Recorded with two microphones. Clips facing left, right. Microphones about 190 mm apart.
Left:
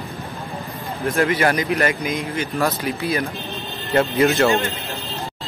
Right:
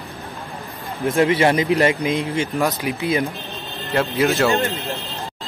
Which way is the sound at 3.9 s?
Centre (ahead or behind).